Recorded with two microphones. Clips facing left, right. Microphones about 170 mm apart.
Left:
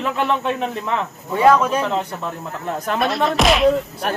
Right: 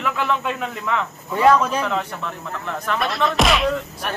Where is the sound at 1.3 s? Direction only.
5° left (ahead or behind).